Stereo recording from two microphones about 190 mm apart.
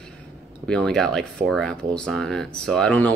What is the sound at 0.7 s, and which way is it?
Speech, 5° left (ahead or behind).